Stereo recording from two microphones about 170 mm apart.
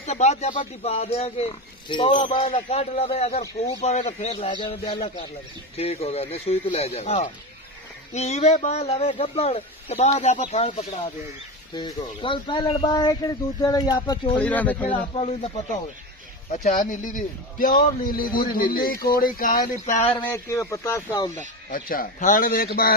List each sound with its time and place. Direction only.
0.0 s speech: 40° left (ahead or behind)
4.4 s speech: 30° left (ahead or behind)
5.8 s speech: 35° left (ahead or behind)
11.7 s speech: 30° left (ahead or behind)
14.3 s speech: 10° left (ahead or behind)
15.1 s speech: 35° left (ahead or behind)
16.4 s a man's voice: 45° left (ahead or behind)
20.0 s speech: 30° left (ahead or behind)
20.3 s speech: 15° left (ahead or behind)
21.6 s a man's voice: 55° left (ahead or behind)